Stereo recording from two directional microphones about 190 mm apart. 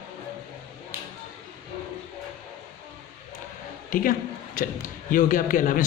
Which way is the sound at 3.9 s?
45° left (ahead or behind).